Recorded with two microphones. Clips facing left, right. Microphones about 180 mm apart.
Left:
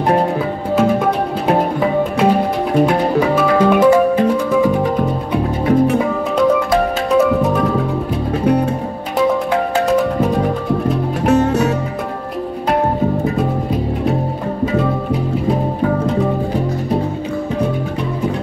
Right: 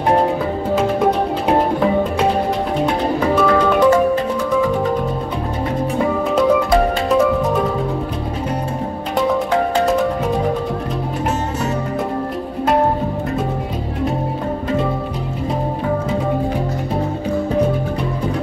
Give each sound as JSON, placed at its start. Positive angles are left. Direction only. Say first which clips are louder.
{"t": 3.3, "sound": "music", "louder": "left 1 dB", "side_deg": 10}
{"t": 11.2, "sound": "music", "louder": "left 11 dB", "side_deg": 65}